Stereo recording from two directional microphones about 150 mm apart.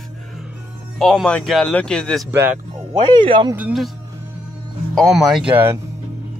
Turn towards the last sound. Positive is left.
turn(degrees=-10)  # may be behind; listen again after turning